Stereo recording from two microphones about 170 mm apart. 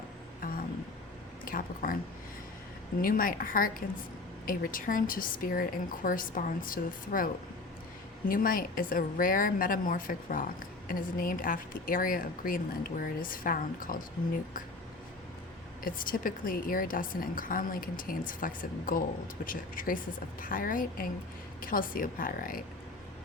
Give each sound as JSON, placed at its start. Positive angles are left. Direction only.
{"t": 0.4, "sound": "vehicle", "side_deg": 55}
{"t": 1.5, "sound": "a woman's voice", "side_deg": 55}
{"t": 3.0, "sound": "a woman's voice", "side_deg": 55}
{"t": 8.3, "sound": "a woman's voice", "side_deg": 55}
{"t": 15.8, "sound": "a woman's voice", "side_deg": 55}